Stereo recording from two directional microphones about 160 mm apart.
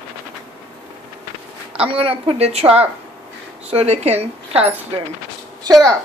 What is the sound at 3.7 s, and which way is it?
Speech, 40° right (ahead or behind).